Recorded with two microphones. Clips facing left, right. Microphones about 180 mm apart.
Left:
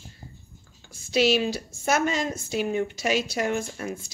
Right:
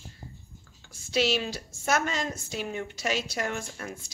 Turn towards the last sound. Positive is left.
turn(degrees=10)  # may be behind; listen again after turning